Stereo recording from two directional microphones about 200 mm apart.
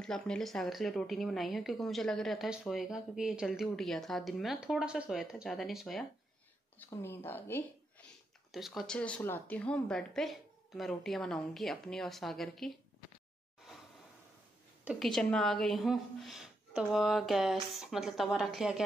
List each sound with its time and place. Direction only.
0.0 s a woman's voice: 5° left (ahead or behind)
6.8 s speech: 10° left (ahead or behind)
8.5 s a woman's voice: centre (ahead or behind)
14.9 s a woman's voice: centre (ahead or behind)